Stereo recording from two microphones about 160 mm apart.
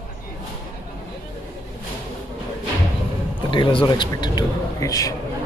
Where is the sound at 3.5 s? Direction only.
30° left (ahead or behind).